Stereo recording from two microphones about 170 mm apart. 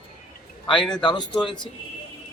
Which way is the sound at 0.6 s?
30° left (ahead or behind).